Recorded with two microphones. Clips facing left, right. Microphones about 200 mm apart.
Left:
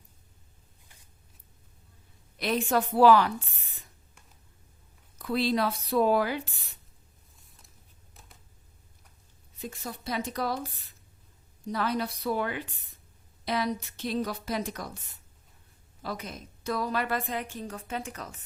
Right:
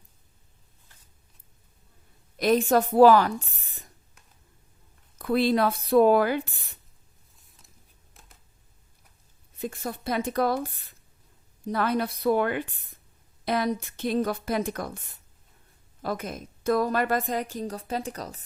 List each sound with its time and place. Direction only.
2.4 s a woman's voice: 45° right (ahead or behind)
5.1 s a woman's voice: 55° right (ahead or behind)
7.3 s a sound: centre (ahead or behind)
9.6 s a woman's voice: 55° right (ahead or behind)
11.7 s a woman's voice: 55° right (ahead or behind)
16.0 s a woman's voice: 50° right (ahead or behind)